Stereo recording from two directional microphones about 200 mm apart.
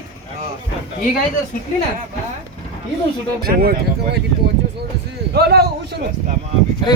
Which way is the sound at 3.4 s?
50° right (ahead or behind).